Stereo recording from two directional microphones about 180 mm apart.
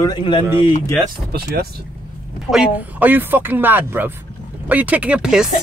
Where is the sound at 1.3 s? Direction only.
60° right (ahead or behind).